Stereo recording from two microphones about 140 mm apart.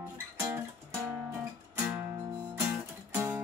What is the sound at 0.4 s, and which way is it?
Music, 15° right (ahead or behind).